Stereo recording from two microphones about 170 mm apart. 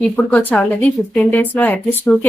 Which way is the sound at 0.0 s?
10° left (ahead or behind).